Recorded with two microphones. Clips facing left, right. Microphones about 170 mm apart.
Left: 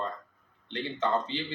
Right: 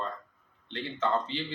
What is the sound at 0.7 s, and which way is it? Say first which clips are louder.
Speech: left 1 dB; 15° left (ahead or behind).